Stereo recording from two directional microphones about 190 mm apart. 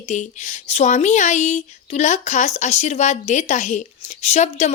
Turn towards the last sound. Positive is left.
turn(degrees=35)  # may be behind; listen again after turning